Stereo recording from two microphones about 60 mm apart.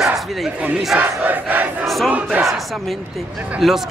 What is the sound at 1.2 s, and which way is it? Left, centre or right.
Crowd, right.